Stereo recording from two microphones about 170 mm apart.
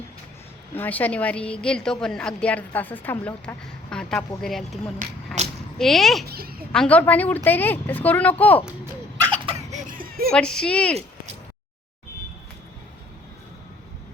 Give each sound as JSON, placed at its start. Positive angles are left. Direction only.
{"t": 0.8, "sound": "a woman's voice", "side_deg": 10}
{"t": 4.9, "sound": "a sound", "side_deg": -45}
{"t": 5.8, "sound": "speech", "side_deg": 0}
{"t": 6.2, "sound": "speech", "side_deg": -65}
{"t": 6.7, "sound": "a woman's voice", "side_deg": 10}
{"t": 9.3, "sound": "laughter", "side_deg": -35}
{"t": 10.3, "sound": "speech", "side_deg": 5}